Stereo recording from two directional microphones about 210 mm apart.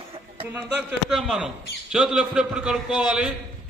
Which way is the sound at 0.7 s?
Centre (ahead or behind).